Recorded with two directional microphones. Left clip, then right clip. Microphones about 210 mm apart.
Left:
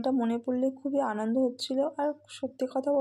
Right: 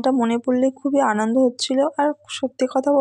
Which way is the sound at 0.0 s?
20° right (ahead or behind).